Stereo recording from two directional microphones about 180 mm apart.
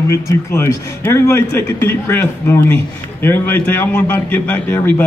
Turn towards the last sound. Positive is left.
turn(degrees=10)  # may be behind; listen again after turning